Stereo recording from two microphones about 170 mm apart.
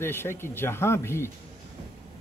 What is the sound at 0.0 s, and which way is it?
Speech, 15° left (ahead or behind).